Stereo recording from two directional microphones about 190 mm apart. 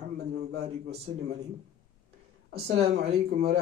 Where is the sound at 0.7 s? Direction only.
35° right (ahead or behind).